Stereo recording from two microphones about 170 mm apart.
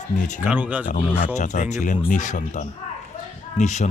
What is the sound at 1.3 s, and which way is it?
Speech, 45° left (ahead or behind).